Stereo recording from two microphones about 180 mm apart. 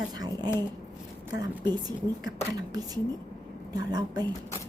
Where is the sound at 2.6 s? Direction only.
20° right (ahead or behind).